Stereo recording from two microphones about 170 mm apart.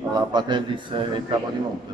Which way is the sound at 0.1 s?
25° right (ahead or behind).